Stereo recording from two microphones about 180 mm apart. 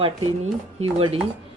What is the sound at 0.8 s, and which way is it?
Speech, 35° right (ahead or behind).